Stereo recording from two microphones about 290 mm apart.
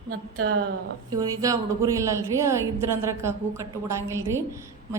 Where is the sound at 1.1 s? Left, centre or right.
Centre.